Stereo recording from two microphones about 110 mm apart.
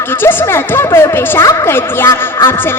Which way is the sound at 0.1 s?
20° left (ahead or behind).